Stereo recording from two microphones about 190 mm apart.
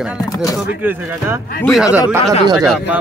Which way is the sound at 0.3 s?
20° left (ahead or behind).